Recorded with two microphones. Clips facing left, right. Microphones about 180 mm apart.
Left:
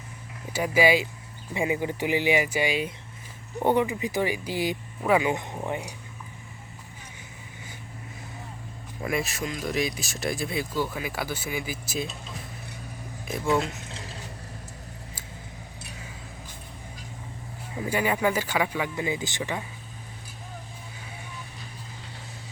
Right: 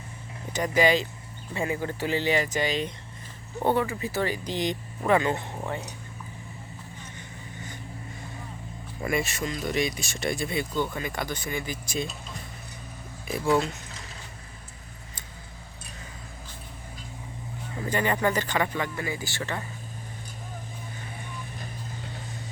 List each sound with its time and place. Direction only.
0.5 s speech: 5° left (ahead or behind)
9.0 s speech: centre (ahead or behind)
17.7 s speech: 10° left (ahead or behind)